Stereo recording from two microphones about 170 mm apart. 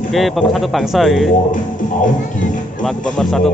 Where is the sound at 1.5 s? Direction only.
50° left (ahead or behind).